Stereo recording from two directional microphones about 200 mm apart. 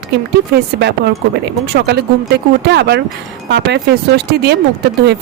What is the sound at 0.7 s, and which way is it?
Speech, 55° right (ahead or behind).